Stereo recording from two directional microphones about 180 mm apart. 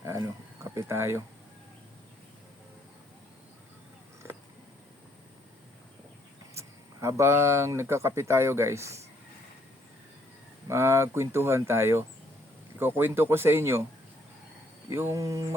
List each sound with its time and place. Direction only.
0.0 s a sound: 15° right (ahead or behind)
6.5 s speech: 15° right (ahead or behind)
10.7 s speech: 15° right (ahead or behind)
14.8 s speech: 15° right (ahead or behind)